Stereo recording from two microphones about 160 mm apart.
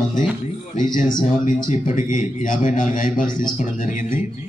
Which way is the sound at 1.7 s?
55° left (ahead or behind).